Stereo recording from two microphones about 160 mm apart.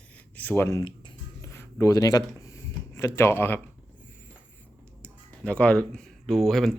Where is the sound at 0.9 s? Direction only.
25° left (ahead or behind).